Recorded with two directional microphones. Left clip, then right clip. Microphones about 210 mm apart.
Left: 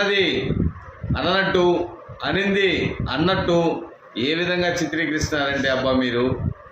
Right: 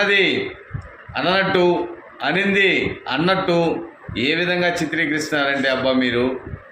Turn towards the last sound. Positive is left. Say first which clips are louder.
# right 2 dB
turn(degrees=5)  # may be behind; listen again after turning